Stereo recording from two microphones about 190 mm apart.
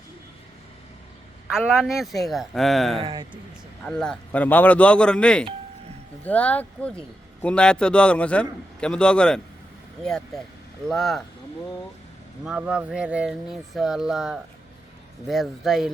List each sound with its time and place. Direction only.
1.5 s speech: 5° right (ahead or behind)
3.0 s speech: 25° right (ahead or behind)
3.8 s speech: 5° left (ahead or behind)
12.5 s speech: 5° right (ahead or behind)